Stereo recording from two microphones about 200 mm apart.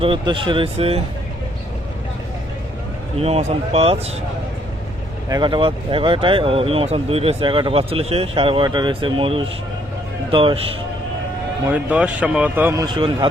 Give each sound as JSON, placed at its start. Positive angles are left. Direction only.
{"t": 0.0, "sound": "speech", "side_deg": -25}
{"t": 3.2, "sound": "speech", "side_deg": -30}
{"t": 5.3, "sound": "speech", "side_deg": -25}
{"t": 11.6, "sound": "speech", "side_deg": -10}